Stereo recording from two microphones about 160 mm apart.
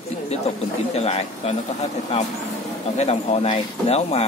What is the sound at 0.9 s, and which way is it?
Speech, 40° left (ahead or behind).